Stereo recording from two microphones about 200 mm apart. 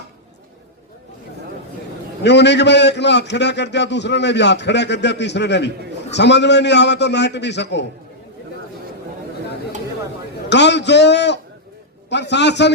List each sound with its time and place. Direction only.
2.2 s a man's voice: 60° left (ahead or behind)
10.5 s a man's voice: 60° left (ahead or behind)